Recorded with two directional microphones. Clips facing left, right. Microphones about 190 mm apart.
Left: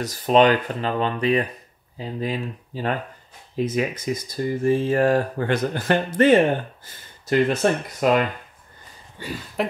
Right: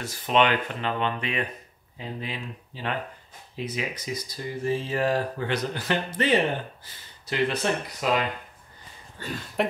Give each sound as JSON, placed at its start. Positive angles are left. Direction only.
{"t": 0.0, "sound": "speech", "side_deg": 40}
{"t": 9.2, "sound": "speech", "side_deg": 5}